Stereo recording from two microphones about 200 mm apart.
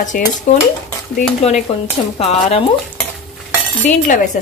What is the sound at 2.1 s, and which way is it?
Speech, 30° left (ahead or behind).